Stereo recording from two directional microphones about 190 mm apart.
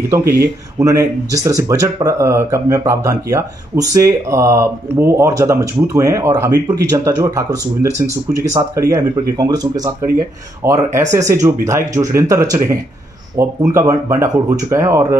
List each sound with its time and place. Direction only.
0.7 s speech: 15° right (ahead or behind)